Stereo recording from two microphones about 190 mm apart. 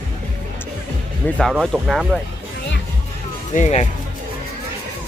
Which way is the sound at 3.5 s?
35° left (ahead or behind).